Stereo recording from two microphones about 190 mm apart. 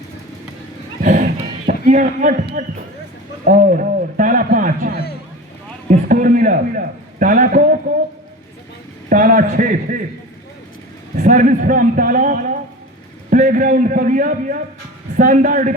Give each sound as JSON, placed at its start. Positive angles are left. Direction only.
{"t": 1.0, "sound": "a sound", "side_deg": -40}
{"t": 2.6, "sound": "a man's voice", "side_deg": -40}
{"t": 9.0, "sound": "a man's voice", "side_deg": -45}
{"t": 11.2, "sound": "a man's voice", "side_deg": -45}